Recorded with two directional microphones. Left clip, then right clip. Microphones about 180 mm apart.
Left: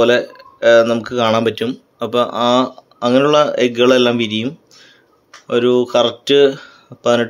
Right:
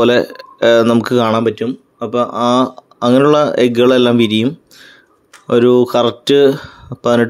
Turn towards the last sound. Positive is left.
turn(degrees=-25)  # may be behind; listen again after turning